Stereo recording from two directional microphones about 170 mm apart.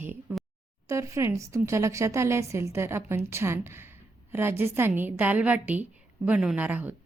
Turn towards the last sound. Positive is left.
turn(degrees=-10)  # may be behind; listen again after turning